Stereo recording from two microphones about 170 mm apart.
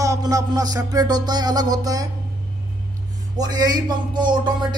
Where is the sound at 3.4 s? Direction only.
25° right (ahead or behind).